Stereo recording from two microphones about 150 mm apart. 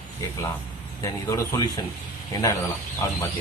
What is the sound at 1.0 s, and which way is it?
Speech, 20° left (ahead or behind).